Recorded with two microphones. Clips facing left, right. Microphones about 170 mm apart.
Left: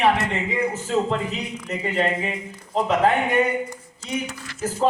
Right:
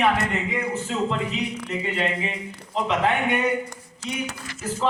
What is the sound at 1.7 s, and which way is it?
A man's voice, 40° left (ahead or behind).